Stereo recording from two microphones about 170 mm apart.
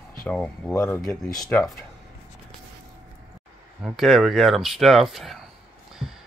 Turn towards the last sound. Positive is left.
turn(degrees=0)  # may be behind; listen again after turning